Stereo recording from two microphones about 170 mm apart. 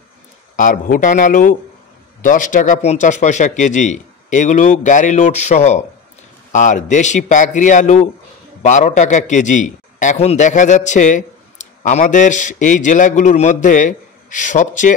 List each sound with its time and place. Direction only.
0.6 s a man's voice: 50° left (ahead or behind)